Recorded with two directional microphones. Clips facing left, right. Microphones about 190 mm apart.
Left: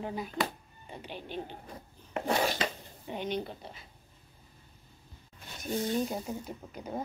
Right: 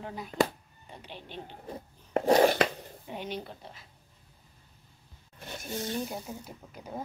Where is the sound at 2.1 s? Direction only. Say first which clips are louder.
Right 8 dB; 40° right (ahead or behind).